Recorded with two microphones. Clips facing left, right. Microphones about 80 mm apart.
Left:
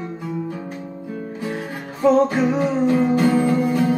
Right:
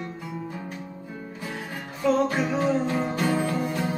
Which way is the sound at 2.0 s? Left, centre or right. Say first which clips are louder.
Left 7 dB; left.